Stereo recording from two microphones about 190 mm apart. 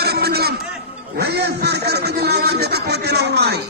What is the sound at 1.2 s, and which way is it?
Music, 60° right (ahead or behind).